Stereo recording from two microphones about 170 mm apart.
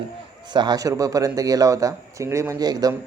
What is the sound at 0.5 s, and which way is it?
A man's voice, 25° right (ahead or behind).